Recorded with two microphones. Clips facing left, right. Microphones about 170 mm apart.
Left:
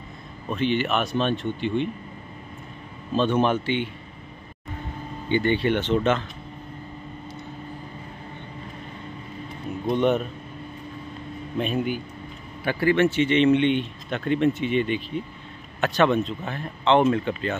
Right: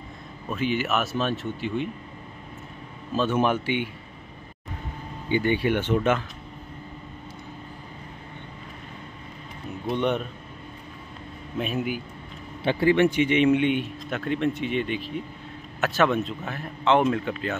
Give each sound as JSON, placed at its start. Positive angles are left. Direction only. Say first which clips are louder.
{"t": 0.5, "sound": "speech", "louder": "left 2 dB", "side_deg": -5}
{"t": 3.1, "sound": "speech", "louder": "left 2 dB", "side_deg": -5}
{"t": 5.3, "sound": "speech", "louder": "left 1 dB", "side_deg": -10}
{"t": 9.8, "sound": "speech", "louder": "left 4 dB", "side_deg": 0}
{"t": 11.5, "sound": "speech", "louder": "left 2 dB", "side_deg": -5}
{"t": 12.6, "sound": "speech", "louder": "right 1 dB", "side_deg": -20}